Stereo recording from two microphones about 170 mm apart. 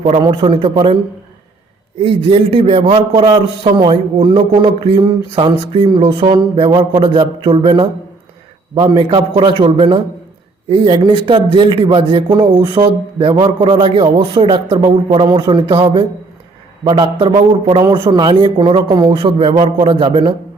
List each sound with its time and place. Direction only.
0.0 s a man's voice: 35° right (ahead or behind)
2.0 s a man's voice: 35° right (ahead or behind)